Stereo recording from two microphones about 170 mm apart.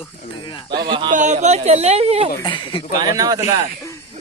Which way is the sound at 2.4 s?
30° left (ahead or behind).